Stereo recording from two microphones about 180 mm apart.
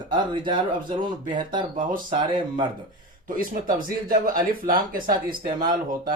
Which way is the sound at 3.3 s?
50° right (ahead or behind).